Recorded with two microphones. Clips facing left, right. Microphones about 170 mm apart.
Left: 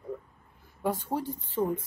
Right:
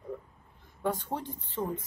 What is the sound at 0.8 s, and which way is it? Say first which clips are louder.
Speech: left 2 dB; 10° left (ahead or behind).